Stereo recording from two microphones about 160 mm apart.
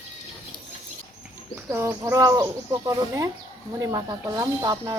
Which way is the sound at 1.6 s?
20° right (ahead or behind).